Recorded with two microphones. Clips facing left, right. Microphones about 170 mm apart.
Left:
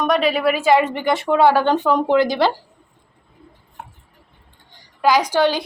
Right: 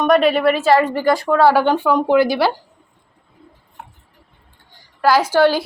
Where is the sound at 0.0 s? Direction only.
Centre (ahead or behind).